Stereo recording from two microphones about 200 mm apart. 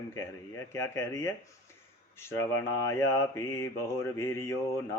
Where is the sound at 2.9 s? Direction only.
15° left (ahead or behind).